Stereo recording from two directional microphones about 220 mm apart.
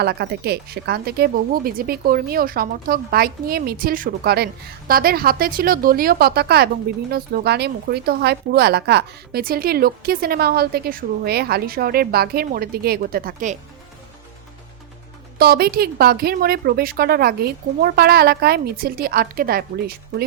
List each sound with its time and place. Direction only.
0.0 s a woman's voice: 45° right (ahead or behind)
15.4 s a woman's voice: 45° right (ahead or behind)